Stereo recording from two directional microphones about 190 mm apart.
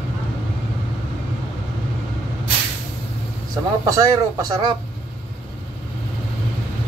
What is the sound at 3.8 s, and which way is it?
Speech, 20° right (ahead or behind).